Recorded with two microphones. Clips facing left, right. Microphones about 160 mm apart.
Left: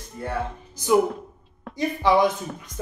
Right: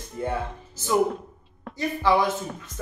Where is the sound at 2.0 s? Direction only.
15° left (ahead or behind).